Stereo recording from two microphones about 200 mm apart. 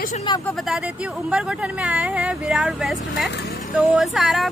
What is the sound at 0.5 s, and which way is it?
A woman's voice, centre (ahead or behind).